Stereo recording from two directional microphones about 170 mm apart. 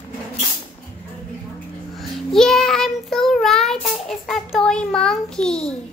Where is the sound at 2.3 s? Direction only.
Centre (ahead or behind).